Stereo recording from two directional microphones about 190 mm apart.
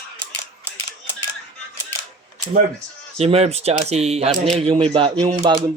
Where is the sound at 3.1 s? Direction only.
35° right (ahead or behind).